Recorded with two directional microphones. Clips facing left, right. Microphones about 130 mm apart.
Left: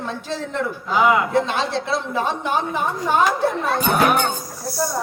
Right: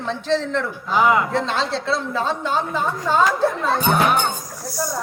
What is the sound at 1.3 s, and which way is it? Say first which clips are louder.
Speech: left 2 dB; 15° left (ahead or behind).